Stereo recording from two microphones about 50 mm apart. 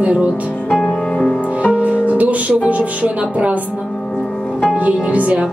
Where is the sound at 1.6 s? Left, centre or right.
Right.